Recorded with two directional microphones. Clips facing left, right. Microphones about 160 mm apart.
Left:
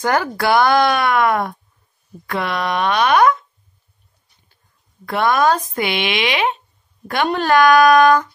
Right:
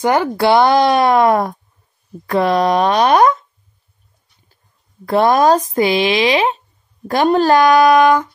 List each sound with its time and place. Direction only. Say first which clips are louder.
0.0 s speech: right 4 dB; 20° right (ahead or behind)
5.0 s speech: right 4 dB; 35° right (ahead or behind)